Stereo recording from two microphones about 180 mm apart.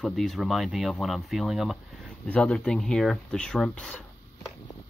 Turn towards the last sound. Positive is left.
turn(degrees=5)  # may be behind; listen again after turning